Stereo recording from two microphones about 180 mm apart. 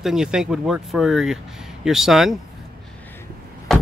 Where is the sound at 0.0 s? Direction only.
5° right (ahead or behind).